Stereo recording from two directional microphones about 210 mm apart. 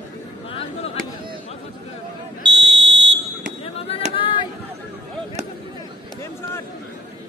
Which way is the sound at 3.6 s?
25° left (ahead or behind).